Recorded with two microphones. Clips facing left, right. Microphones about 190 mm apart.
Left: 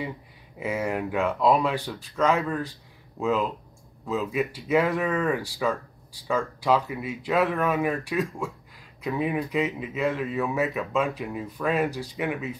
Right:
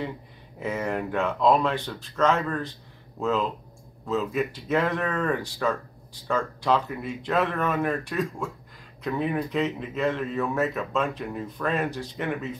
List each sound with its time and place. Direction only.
0.6 s a man's voice: 10° left (ahead or behind)